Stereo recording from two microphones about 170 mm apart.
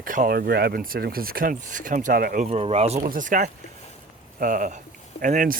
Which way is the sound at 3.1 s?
50° right (ahead or behind).